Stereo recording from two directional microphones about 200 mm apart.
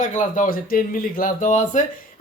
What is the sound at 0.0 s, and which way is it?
A man's voice, 40° left (ahead or behind).